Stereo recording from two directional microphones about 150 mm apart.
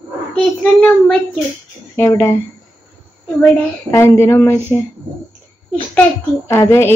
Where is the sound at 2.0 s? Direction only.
20° left (ahead or behind).